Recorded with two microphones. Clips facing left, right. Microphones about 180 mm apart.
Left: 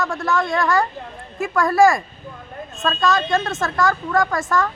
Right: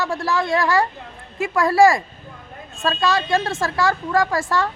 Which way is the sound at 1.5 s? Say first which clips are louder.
Even; 25° right (ahead or behind).